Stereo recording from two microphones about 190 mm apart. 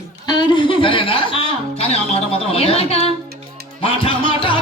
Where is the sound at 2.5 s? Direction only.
30° left (ahead or behind).